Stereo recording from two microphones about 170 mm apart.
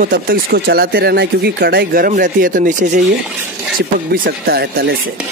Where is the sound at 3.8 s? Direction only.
70° right (ahead or behind).